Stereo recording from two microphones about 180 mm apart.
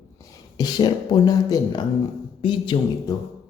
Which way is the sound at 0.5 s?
20° left (ahead or behind).